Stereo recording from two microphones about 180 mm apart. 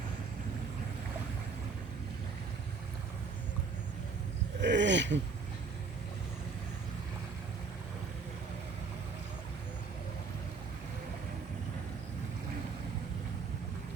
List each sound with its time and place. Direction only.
4.6 s speech: 75° right (ahead or behind)